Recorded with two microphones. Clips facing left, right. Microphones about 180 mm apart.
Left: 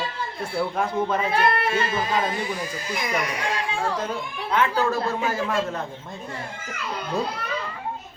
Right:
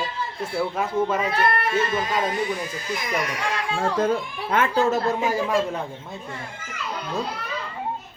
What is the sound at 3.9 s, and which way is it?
Speech, 55° right (ahead or behind).